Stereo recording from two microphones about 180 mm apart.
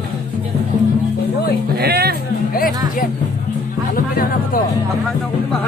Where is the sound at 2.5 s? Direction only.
50° left (ahead or behind).